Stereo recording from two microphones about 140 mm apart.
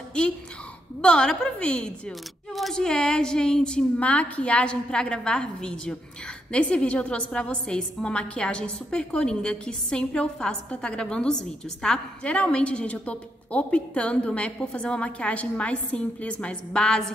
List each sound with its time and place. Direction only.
1.0 s a woman's voice: 5° left (ahead or behind)